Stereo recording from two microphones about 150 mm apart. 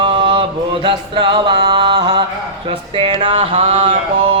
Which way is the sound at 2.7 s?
35° right (ahead or behind).